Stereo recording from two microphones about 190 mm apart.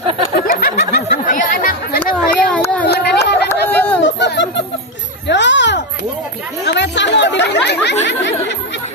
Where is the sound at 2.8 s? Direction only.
60° left (ahead or behind).